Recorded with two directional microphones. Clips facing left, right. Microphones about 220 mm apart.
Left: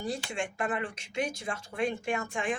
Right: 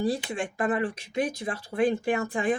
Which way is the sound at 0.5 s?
35° right (ahead or behind).